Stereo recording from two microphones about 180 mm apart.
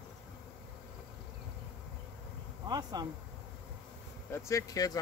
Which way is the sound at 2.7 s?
20° right (ahead or behind).